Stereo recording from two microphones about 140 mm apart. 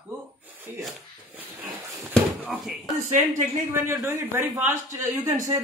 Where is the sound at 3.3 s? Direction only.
25° right (ahead or behind).